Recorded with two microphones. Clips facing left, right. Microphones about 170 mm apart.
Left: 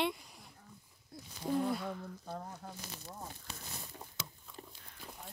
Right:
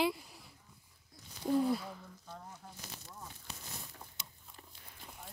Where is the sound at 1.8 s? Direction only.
60° left (ahead or behind).